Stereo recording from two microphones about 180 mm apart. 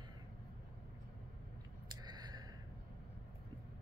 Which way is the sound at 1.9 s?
25° right (ahead or behind).